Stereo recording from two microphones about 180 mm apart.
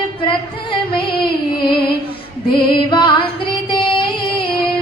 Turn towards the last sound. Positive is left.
turn(degrees=30)  # may be behind; listen again after turning